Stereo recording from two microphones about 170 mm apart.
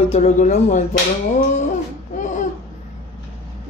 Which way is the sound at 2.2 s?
45° left (ahead or behind).